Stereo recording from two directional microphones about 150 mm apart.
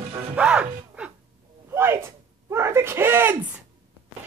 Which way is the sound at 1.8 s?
15° right (ahead or behind).